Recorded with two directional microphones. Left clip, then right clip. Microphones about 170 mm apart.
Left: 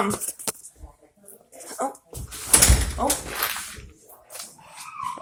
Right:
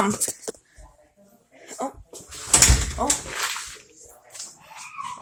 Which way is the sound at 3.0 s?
5° right (ahead or behind).